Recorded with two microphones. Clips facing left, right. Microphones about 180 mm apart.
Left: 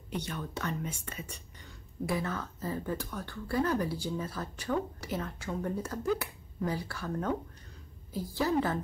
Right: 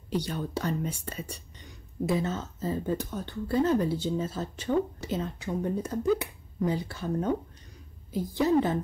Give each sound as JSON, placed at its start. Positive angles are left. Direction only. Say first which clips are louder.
{"t": 0.1, "sound": "speech", "louder": "right 6 dB", "side_deg": -35}
{"t": 1.6, "sound": "speech", "louder": "right 5 dB", "side_deg": -25}